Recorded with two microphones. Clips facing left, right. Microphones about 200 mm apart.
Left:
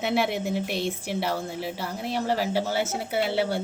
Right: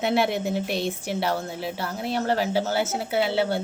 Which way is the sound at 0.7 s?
35° right (ahead or behind).